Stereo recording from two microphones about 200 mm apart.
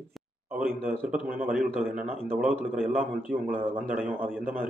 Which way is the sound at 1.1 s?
5° right (ahead or behind).